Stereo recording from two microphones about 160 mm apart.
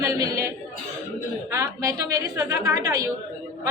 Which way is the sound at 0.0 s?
20° right (ahead or behind).